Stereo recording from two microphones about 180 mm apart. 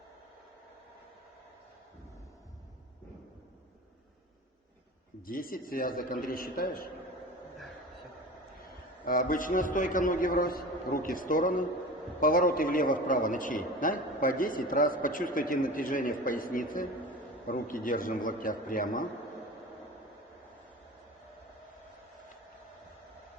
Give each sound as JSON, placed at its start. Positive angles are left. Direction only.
{"t": 5.2, "sound": "a man's voice", "side_deg": 50}
{"t": 8.6, "sound": "a man's voice", "side_deg": 50}